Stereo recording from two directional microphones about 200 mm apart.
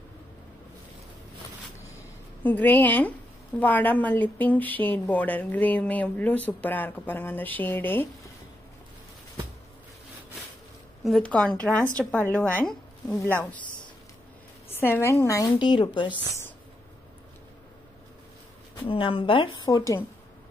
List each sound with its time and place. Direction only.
2.4 s speech: 10° left (ahead or behind)
11.1 s a woman's voice: 5° left (ahead or behind)
14.7 s speech: 10° left (ahead or behind)
18.9 s a woman's voice: 25° left (ahead or behind)